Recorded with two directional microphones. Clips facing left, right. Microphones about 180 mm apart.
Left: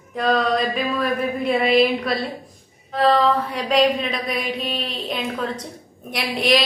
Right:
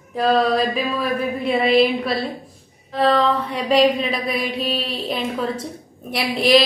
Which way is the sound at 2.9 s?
Centre (ahead or behind).